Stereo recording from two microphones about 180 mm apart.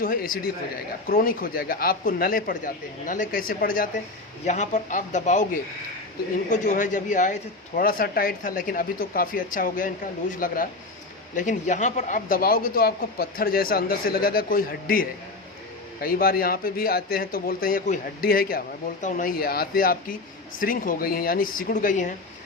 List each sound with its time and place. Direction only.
0.0 s speech: 50° left (ahead or behind)
4.4 s a man's voice: 40° left (ahead or behind)